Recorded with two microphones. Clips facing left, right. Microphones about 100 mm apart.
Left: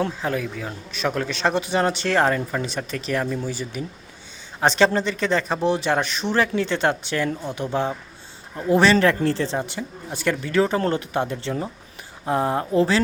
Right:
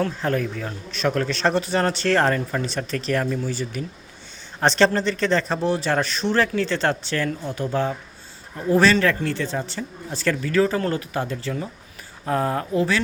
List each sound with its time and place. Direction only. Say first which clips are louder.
0.2 s a man's voice: right 2 dB; 10° left (ahead or behind)
9.0 s speech: left 3 dB; 30° left (ahead or behind)
9.6 s speech: left 1 dB; 15° left (ahead or behind)